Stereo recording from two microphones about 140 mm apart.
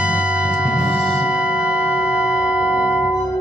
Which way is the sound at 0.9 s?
10° right (ahead or behind).